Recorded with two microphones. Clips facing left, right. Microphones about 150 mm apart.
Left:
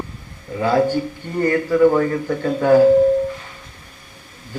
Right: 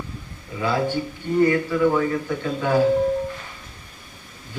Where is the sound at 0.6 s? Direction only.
45° left (ahead or behind).